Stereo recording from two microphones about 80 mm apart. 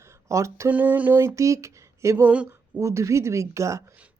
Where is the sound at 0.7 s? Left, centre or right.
Right.